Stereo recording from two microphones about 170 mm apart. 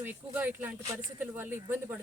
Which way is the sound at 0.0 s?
10° right (ahead or behind).